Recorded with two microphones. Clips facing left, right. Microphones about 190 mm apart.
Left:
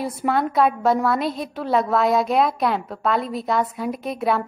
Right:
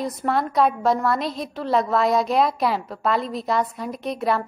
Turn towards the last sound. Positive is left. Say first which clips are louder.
# left 1 dB
turn(degrees=0)  # may be behind; listen again after turning